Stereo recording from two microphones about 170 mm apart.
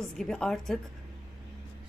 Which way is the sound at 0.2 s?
Centre (ahead or behind).